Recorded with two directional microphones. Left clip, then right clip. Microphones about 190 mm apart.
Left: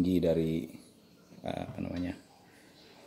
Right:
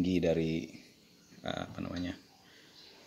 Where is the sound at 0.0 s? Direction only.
10° left (ahead or behind).